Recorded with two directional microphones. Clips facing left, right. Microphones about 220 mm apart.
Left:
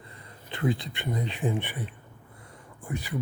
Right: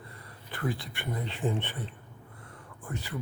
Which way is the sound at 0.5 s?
20° left (ahead or behind).